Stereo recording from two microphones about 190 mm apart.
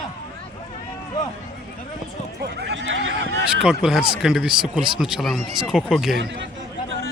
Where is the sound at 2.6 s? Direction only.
75° right (ahead or behind).